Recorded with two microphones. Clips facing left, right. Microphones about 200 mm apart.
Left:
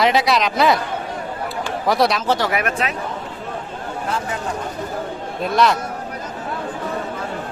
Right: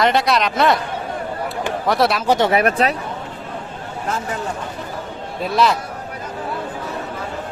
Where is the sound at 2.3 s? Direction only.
25° right (ahead or behind).